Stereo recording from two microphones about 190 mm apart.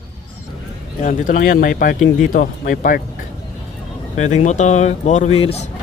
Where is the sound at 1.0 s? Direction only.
40° left (ahead or behind).